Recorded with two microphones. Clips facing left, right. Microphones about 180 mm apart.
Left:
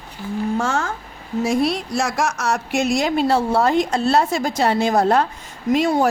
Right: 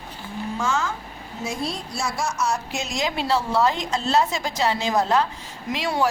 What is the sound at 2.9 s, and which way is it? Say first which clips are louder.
A woman's voice: left 3 dB; 50° left (ahead or behind).